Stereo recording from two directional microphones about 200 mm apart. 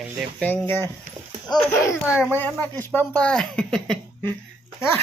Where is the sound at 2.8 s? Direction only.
10° left (ahead or behind).